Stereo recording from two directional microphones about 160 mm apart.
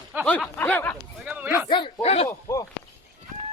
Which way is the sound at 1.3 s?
10° right (ahead or behind).